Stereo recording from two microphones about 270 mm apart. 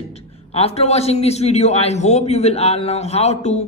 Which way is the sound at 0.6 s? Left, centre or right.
Left.